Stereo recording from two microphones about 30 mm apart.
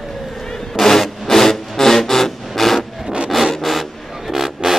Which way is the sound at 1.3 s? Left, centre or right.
Centre.